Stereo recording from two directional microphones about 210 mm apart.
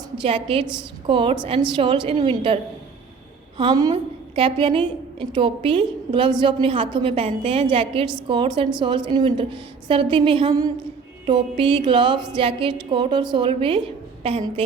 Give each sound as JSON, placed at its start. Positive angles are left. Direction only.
{"t": 0.2, "sound": "a woman's voice", "side_deg": -25}
{"t": 3.6, "sound": "a woman's voice", "side_deg": -20}